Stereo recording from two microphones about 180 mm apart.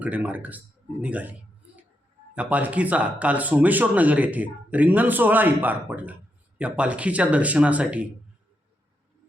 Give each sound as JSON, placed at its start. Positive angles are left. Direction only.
{"t": 0.0, "sound": "speech", "side_deg": -10}
{"t": 1.0, "sound": "a sound", "side_deg": -10}
{"t": 2.3, "sound": "speech", "side_deg": -10}